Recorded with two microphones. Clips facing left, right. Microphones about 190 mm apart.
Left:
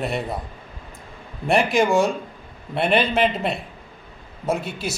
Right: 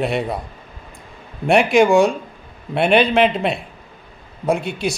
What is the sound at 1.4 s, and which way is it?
Speech, centre (ahead or behind).